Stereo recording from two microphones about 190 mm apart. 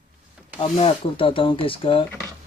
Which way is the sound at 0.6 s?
30° left (ahead or behind).